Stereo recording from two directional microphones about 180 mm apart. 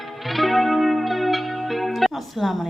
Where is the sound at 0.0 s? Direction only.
Centre (ahead or behind).